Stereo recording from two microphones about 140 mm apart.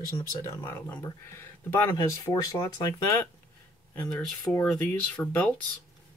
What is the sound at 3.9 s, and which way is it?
Speech, 15° left (ahead or behind).